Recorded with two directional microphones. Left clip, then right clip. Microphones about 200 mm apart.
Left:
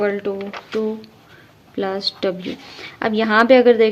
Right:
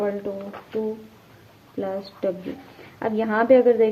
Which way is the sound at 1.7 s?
35° left (ahead or behind).